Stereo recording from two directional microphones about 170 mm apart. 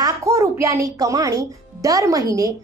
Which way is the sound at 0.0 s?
20° right (ahead or behind).